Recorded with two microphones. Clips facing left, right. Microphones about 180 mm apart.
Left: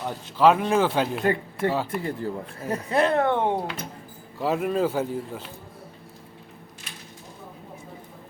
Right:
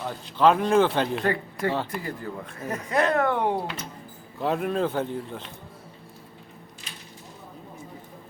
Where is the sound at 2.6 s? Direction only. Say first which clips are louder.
Left 1 dB; 30° left (ahead or behind).